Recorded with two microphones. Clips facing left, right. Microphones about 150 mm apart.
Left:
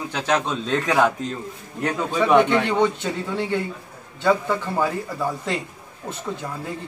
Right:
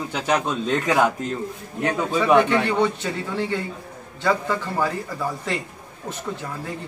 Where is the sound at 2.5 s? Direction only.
20° left (ahead or behind).